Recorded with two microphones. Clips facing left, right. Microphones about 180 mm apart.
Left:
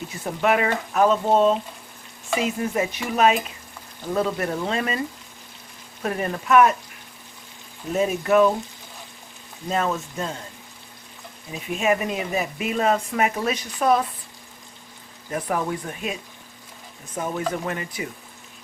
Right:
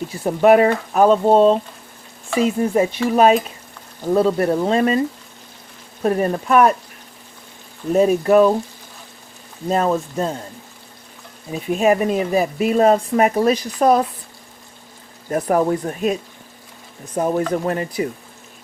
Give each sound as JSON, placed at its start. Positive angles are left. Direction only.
{"t": 0.1, "sound": "speech", "side_deg": -35}
{"t": 2.6, "sound": "speech", "side_deg": -35}
{"t": 7.9, "sound": "speech", "side_deg": -35}
{"t": 9.6, "sound": "speech", "side_deg": -35}
{"t": 11.5, "sound": "speech", "side_deg": -35}
{"t": 15.3, "sound": "speech", "side_deg": -40}
{"t": 17.2, "sound": "speech", "side_deg": -40}